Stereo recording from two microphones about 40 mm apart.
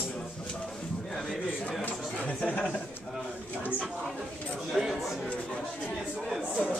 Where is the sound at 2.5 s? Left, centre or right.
Left.